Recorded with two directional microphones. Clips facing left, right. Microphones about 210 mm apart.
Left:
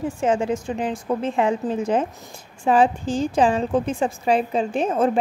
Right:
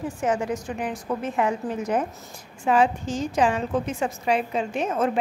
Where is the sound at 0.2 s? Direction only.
25° left (ahead or behind).